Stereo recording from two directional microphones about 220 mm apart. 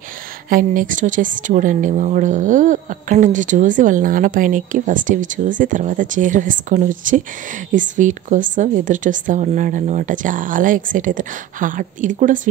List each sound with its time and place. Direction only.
0.5 s a woman's voice: 40° right (ahead or behind)